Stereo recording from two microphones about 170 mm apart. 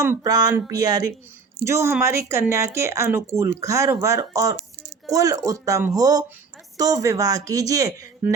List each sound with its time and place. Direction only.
0.0 s speech: 20° right (ahead or behind)